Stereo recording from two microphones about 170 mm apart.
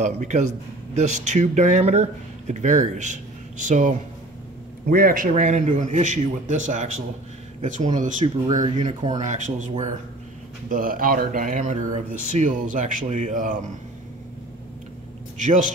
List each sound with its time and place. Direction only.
0.0 s speech: 45° right (ahead or behind)
4.8 s speech: 60° right (ahead or behind)
8.5 s speech: 25° right (ahead or behind)
8.7 s speech: 45° right (ahead or behind)
15.3 s a man's voice: 45° right (ahead or behind)